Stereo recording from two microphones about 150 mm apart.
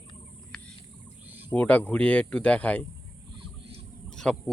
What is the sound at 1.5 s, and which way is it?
Speech, 10° left (ahead or behind).